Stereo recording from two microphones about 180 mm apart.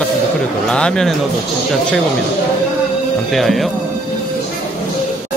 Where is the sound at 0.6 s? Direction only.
5° left (ahead or behind).